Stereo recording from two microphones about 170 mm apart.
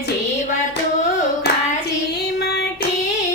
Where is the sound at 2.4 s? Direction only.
75° left (ahead or behind).